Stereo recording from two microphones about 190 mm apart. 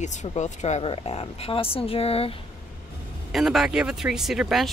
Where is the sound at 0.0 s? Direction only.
40° left (ahead or behind).